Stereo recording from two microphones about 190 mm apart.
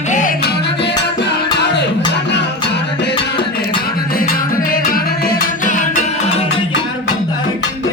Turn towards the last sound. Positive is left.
turn(degrees=45)  # may be behind; listen again after turning